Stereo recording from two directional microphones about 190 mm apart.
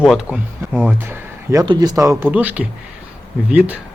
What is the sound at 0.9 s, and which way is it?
Speech, 15° right (ahead or behind).